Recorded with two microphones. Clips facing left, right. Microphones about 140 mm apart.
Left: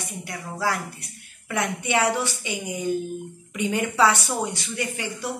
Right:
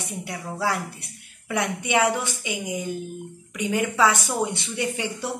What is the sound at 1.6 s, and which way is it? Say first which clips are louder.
A woman's voice: right 1 dB; 15° right (ahead or behind).